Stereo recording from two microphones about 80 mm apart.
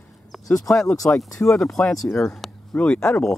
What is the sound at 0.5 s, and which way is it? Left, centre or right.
Speech, left.